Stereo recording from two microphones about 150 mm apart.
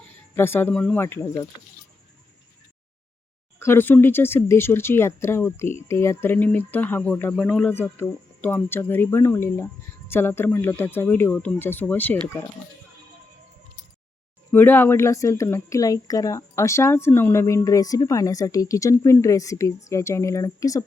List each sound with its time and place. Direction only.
0.3 s speech: 15° left (ahead or behind)
1.0 s speech: 20° left (ahead or behind)
3.6 s speech: 15° left (ahead or behind)
7.7 s speech: 15° left (ahead or behind)
14.5 s a woman's voice: 15° left (ahead or behind)